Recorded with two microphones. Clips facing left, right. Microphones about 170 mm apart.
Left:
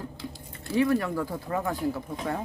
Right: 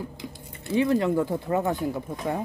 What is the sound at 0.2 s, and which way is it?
Speech, 20° right (ahead or behind).